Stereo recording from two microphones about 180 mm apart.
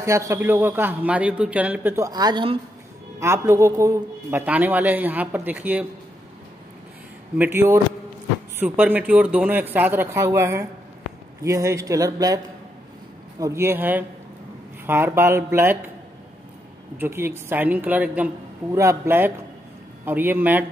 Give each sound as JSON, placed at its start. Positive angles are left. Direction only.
{"t": 0.0, "sound": "a man's voice", "side_deg": -15}
{"t": 3.2, "sound": "a man's voice", "side_deg": -15}
{"t": 7.3, "sound": "a man's voice", "side_deg": -10}
{"t": 13.4, "sound": "a man's voice", "side_deg": -15}
{"t": 17.0, "sound": "a man's voice", "side_deg": -15}